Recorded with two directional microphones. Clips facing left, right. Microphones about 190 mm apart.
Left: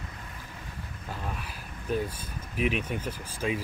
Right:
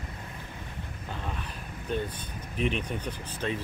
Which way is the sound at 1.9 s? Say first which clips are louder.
Left 2 dB; 5° left (ahead or behind).